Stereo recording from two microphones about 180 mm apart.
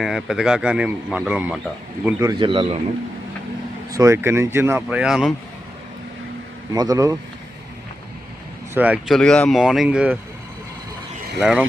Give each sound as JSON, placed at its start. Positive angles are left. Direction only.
{"t": 0.0, "sound": "a man's voice", "side_deg": -5}
{"t": 2.4, "sound": "speech", "side_deg": -30}
{"t": 3.9, "sound": "speech", "side_deg": -15}
{"t": 6.7, "sound": "speech", "side_deg": -20}
{"t": 8.7, "sound": "speech", "side_deg": -10}
{"t": 9.1, "sound": "a man's voice", "side_deg": 5}
{"t": 11.3, "sound": "a man's voice", "side_deg": -5}